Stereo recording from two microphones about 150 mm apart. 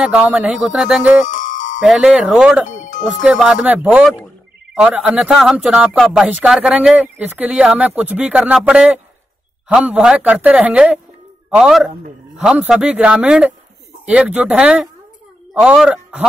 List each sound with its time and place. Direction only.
0.0 s speech: 5° right (ahead or behind)
1.2 s music: 60° left (ahead or behind)
1.8 s speech: 5° right (ahead or behind)